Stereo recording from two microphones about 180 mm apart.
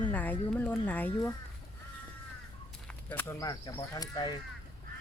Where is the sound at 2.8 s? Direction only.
10° left (ahead or behind).